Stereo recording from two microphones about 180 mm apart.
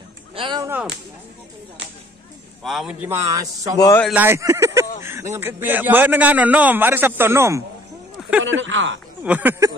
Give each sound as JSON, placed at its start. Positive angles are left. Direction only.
{"t": 0.4, "sound": "a sound", "side_deg": -25}
{"t": 2.6, "sound": "a man's voice", "side_deg": 0}
{"t": 3.1, "sound": "a man's voice", "side_deg": -20}
{"t": 3.7, "sound": "speech", "side_deg": 20}
{"t": 4.1, "sound": "a man's voice", "side_deg": -10}
{"t": 8.5, "sound": "speech", "side_deg": -90}
{"t": 9.2, "sound": "a man's voice", "side_deg": -10}